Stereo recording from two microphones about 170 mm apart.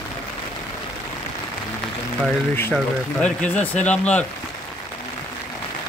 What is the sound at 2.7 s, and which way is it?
Speech, 5° left (ahead or behind).